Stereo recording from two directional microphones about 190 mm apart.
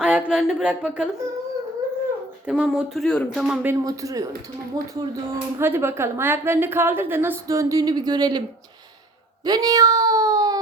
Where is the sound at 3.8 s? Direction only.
20° right (ahead or behind).